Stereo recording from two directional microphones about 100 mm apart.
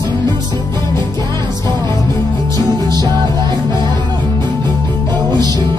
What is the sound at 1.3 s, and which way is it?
Music, 45° right (ahead or behind).